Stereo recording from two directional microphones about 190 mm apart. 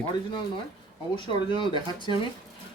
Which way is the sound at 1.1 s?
25° left (ahead or behind).